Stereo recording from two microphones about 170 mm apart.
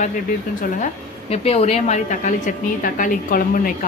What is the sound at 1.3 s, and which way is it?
A woman's voice, 35° left (ahead or behind).